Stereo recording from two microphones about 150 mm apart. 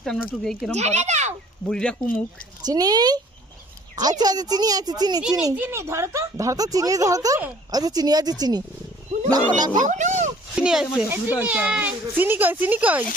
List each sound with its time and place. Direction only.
0.0 s speech: 5° left (ahead or behind)
0.7 s a child's voice: 50° right (ahead or behind)
1.6 s speech: 5° left (ahead or behind)
2.6 s speech: 25° right (ahead or behind)
4.2 s speech: 25° right (ahead or behind)
5.5 s speech: 15° right (ahead or behind)
9.1 s roaring cats: 50° right (ahead or behind)
9.6 s speech: 25° right (ahead or behind)
9.8 s a sound: 55° right (ahead or behind)
10.5 s speech: 5° right (ahead or behind)